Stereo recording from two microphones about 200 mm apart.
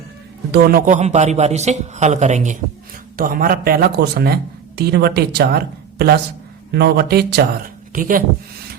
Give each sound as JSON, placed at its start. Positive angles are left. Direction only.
{"t": 0.5, "sound": "a man's voice", "side_deg": -45}